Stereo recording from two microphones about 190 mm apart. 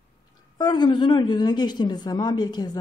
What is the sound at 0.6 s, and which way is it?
Speech, 25° left (ahead or behind).